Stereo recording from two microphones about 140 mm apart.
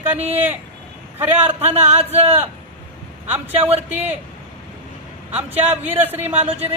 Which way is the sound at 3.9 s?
10° right (ahead or behind).